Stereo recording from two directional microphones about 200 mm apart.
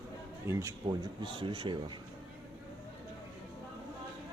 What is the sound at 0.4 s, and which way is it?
Speech, 20° right (ahead or behind).